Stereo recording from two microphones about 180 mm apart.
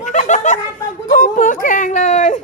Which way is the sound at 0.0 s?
45° left (ahead or behind).